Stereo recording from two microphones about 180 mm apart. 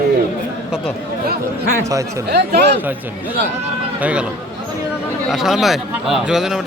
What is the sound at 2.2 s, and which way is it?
Speech, 65° right (ahead or behind).